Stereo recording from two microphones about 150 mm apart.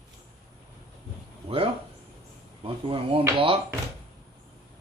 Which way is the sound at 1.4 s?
40° right (ahead or behind).